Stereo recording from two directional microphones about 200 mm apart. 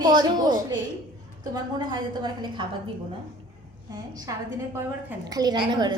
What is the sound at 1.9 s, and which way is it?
Speech, 20° right (ahead or behind).